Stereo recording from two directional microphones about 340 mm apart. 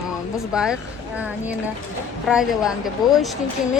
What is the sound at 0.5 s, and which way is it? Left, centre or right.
Speech, centre.